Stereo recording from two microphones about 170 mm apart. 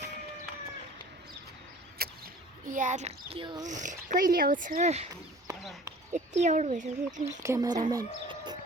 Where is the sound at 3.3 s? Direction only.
30° right (ahead or behind).